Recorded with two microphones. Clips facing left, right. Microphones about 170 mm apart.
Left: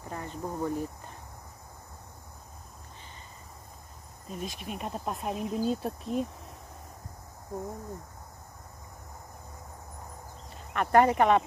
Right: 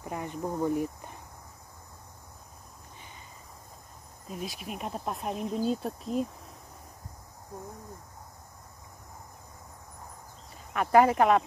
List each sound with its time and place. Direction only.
0.0 s speech: 15° right (ahead or behind)
4.3 s speech: centre (ahead or behind)
10.7 s speech: 5° right (ahead or behind)